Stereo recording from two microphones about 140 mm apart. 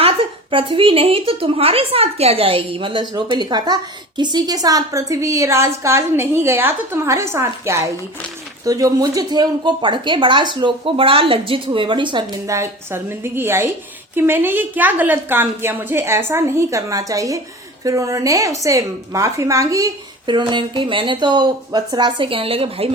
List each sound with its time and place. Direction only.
0.0 s a woman's voice: 40° right (ahead or behind)
12.5 s a woman's voice: 20° right (ahead or behind); by 22.9 s 40° right (ahead or behind)